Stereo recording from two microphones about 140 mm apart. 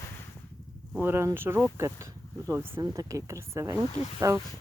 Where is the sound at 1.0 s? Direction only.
15° right (ahead or behind).